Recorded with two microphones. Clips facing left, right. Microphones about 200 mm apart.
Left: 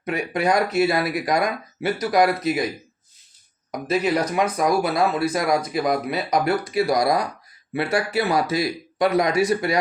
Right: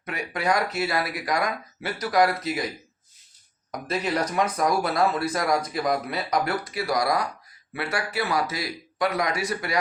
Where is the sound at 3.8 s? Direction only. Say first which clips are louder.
Left 5 dB; 10° left (ahead or behind).